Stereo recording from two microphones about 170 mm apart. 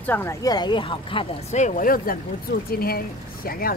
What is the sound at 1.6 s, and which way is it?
Speech, 50° left (ahead or behind).